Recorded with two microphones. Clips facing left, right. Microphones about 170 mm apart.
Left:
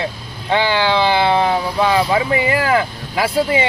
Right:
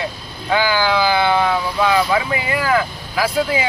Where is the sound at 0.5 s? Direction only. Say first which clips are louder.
Left 1 dB; 30° left (ahead or behind).